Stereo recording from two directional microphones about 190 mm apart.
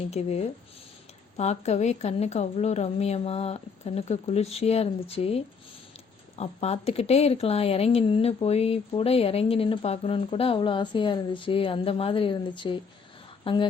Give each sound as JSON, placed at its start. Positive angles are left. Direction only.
{"t": 0.1, "sound": "speech", "side_deg": 35}